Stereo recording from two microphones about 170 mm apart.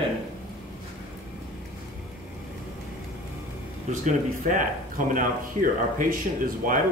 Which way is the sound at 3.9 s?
45° right (ahead or behind).